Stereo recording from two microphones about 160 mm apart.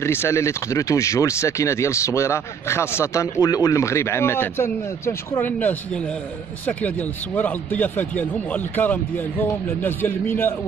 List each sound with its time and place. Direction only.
0.0 s speech: 15° left (ahead or behind)
7.3 s speech: 10° left (ahead or behind)